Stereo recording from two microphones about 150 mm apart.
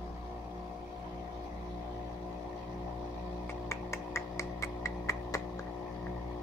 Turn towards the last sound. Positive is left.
turn(degrees=20)  # may be behind; listen again after turning